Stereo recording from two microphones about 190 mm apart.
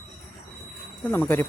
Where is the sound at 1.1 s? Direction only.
10° left (ahead or behind).